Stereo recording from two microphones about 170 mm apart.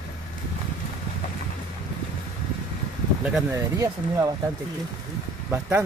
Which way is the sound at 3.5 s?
20° right (ahead or behind).